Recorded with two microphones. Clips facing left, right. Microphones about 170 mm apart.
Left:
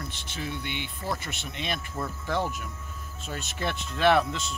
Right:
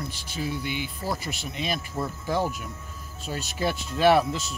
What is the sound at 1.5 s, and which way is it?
Speech, 5° right (ahead or behind).